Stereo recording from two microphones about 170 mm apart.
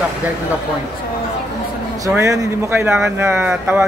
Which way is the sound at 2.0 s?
20° right (ahead or behind).